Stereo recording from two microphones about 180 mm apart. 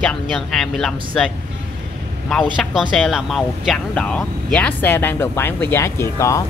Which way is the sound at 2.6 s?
Centre (ahead or behind).